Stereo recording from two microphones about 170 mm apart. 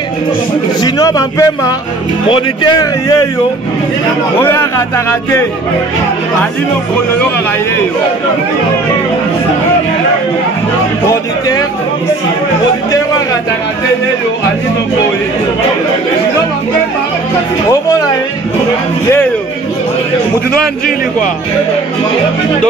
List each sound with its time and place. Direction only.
0.8 s a man's voice: 20° left (ahead or behind)
4.4 s a man's voice: 10° left (ahead or behind)